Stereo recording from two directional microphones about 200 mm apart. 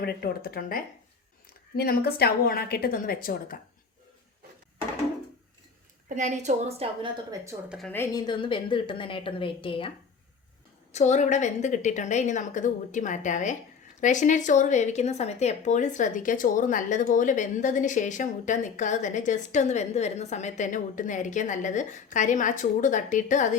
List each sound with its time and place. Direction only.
0.0 s a woman's voice: 50° left (ahead or behind)
6.1 s a woman's voice: 35° right (ahead or behind)
7.7 s a woman's voice: centre (ahead or behind)
7.9 s a woman's voice: 15° left (ahead or behind)
10.9 s speech: 35° left (ahead or behind)